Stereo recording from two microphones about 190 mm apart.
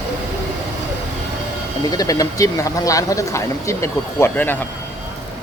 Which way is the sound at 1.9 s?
20° left (ahead or behind).